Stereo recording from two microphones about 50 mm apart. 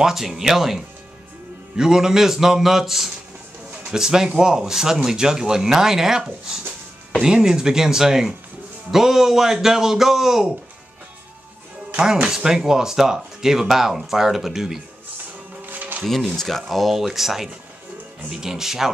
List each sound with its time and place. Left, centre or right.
0.0 s speech: centre
11.9 s speech: centre
15.6 s music: right
16.0 s speech: centre